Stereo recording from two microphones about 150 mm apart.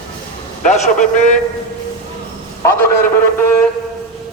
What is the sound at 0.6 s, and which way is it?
Speech, 50° left (ahead or behind).